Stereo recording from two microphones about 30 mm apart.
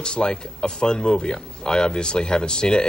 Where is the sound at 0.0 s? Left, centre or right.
Left.